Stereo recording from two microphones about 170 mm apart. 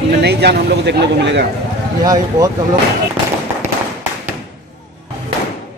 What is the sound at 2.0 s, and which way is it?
Speech, 20° right (ahead or behind).